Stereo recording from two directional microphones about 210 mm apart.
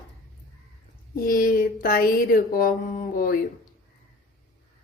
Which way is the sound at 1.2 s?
40° left (ahead or behind).